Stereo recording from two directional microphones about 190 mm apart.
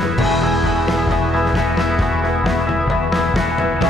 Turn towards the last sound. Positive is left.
turn(degrees=0)  # may be behind; listen again after turning